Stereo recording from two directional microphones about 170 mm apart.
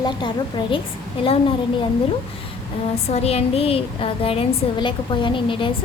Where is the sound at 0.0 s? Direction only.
25° left (ahead or behind).